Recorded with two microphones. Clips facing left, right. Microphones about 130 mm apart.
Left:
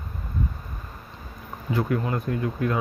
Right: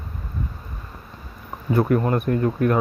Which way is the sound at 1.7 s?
50° right (ahead or behind).